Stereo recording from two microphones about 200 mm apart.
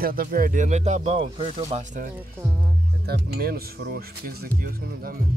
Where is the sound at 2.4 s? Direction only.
15° right (ahead or behind).